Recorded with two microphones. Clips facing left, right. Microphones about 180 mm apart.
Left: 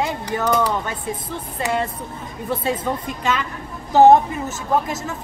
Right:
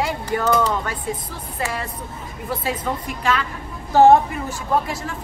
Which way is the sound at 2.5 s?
25° left (ahead or behind).